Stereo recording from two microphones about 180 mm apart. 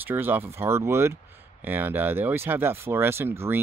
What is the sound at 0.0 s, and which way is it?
Speech, 10° right (ahead or behind).